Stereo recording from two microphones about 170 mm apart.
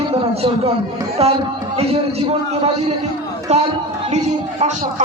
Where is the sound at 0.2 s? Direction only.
30° right (ahead or behind).